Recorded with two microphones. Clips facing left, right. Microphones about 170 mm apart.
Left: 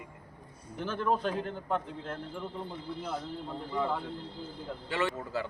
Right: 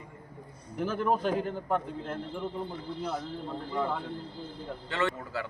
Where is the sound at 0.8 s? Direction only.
5° right (ahead or behind).